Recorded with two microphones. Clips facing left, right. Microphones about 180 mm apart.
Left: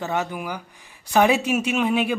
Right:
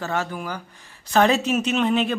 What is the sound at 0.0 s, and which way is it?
A woman's voice, 15° left (ahead or behind).